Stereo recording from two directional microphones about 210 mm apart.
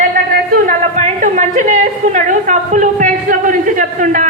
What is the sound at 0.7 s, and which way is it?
A woman's voice, 35° right (ahead or behind).